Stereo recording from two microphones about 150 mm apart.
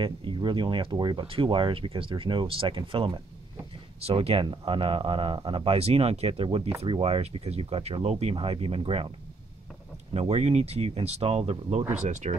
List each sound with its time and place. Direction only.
0.0 s speech: 30° right (ahead or behind)
10.1 s speech: 45° right (ahead or behind)